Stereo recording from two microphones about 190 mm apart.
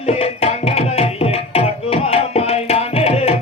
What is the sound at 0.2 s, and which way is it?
Music, 30° left (ahead or behind).